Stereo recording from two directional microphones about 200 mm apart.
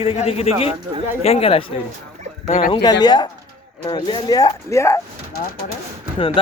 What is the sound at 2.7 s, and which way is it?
A man's voice, 20° left (ahead or behind).